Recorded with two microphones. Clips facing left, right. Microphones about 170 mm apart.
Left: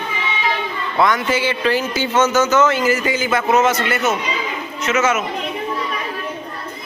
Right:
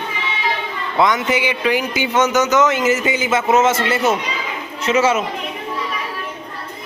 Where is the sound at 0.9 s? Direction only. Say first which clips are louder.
Right 1 dB; 20° right (ahead or behind).